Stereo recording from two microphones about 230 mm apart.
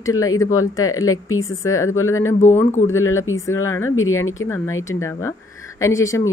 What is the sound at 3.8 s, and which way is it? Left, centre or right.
Speech, left.